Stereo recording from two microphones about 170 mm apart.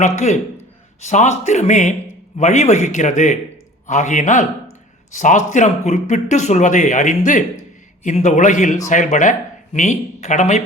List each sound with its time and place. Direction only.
0.0 s speech: 45° left (ahead or behind)